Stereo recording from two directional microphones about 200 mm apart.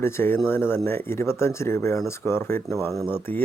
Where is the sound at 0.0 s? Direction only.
10° left (ahead or behind).